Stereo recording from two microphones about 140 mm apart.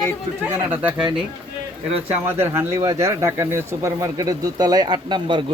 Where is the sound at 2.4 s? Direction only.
15° right (ahead or behind); by 5.4 s 35° right (ahead or behind).